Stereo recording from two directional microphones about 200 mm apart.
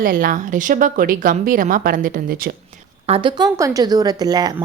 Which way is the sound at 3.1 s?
25° right (ahead or behind).